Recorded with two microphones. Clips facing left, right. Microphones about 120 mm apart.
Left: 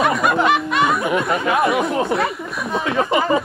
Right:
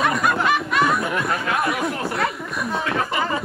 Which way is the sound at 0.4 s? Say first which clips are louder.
Left 3 dB; 20° left (ahead or behind).